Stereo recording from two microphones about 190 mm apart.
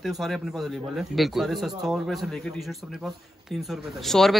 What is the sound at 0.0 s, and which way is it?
Speech, centre (ahead or behind).